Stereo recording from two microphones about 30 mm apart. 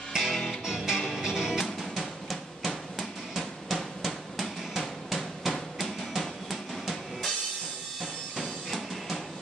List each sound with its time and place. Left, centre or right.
0.1 s music: right
1.8 s drum: centre
8.4 s music: centre